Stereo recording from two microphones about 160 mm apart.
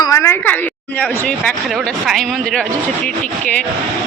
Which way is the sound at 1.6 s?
Centre (ahead or behind).